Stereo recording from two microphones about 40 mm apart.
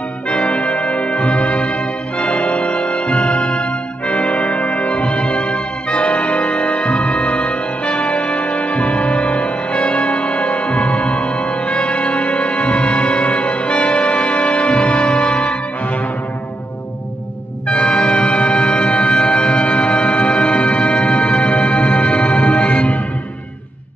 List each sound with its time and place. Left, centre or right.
0.3 s music: left
17.6 s music: left